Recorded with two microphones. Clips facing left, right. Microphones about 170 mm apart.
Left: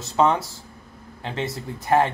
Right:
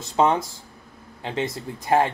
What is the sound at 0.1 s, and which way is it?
Speech, 15° right (ahead or behind).